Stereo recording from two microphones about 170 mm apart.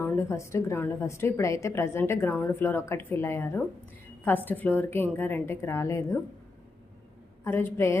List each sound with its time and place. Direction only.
0.0 s a woman's voice: 15° left (ahead or behind)
7.4 s a woman's voice: 15° left (ahead or behind)